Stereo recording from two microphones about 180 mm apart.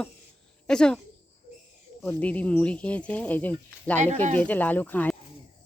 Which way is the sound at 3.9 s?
40° right (ahead or behind).